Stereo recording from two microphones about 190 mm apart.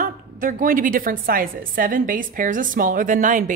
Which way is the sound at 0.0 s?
45° right (ahead or behind).